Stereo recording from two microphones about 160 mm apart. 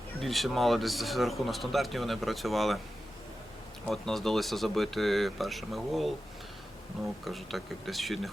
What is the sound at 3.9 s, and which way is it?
Speech, 5° left (ahead or behind).